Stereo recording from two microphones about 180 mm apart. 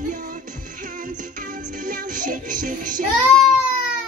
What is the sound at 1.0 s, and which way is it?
Music, 50° right (ahead or behind).